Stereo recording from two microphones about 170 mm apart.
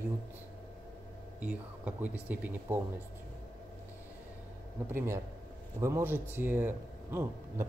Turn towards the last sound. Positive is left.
turn(degrees=-10)  # may be behind; listen again after turning